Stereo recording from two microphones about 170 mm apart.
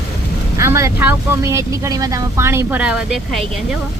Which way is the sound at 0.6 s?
15° right (ahead or behind).